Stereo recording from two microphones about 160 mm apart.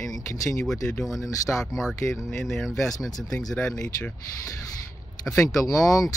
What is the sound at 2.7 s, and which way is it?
Speech, 20° left (ahead or behind).